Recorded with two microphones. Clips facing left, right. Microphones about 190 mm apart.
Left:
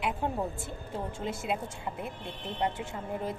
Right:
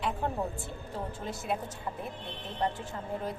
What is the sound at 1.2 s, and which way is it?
Speech, 20° left (ahead or behind).